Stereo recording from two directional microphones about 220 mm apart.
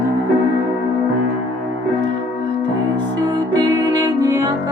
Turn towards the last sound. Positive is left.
turn(degrees=-15)  # may be behind; listen again after turning